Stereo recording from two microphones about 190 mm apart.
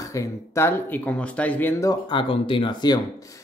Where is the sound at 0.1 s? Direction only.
15° left (ahead or behind).